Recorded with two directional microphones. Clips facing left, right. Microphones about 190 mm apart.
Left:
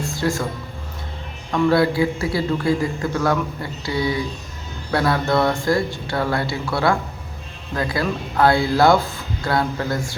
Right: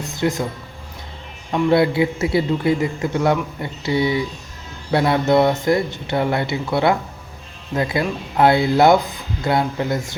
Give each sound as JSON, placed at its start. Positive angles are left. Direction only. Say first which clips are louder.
{"t": 0.0, "sound": "music", "louder": "right 1 dB", "side_deg": -20}
{"t": 1.5, "sound": "a man's voice", "louder": "right 1 dB", "side_deg": -20}